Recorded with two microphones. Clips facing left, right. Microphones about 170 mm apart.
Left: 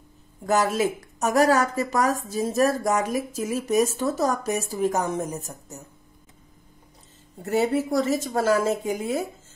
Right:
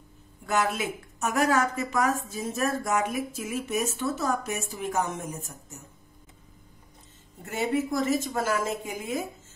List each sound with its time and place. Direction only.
0.4 s a woman's voice: 40° left (ahead or behind)
7.4 s a woman's voice: 35° left (ahead or behind)